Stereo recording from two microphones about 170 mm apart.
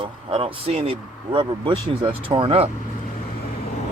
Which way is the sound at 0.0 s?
30° right (ahead or behind).